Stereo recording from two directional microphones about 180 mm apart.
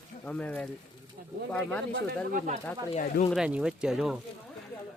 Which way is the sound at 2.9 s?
40° left (ahead or behind).